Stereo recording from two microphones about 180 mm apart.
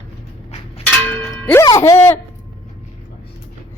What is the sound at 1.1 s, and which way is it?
Clang, 10° left (ahead or behind).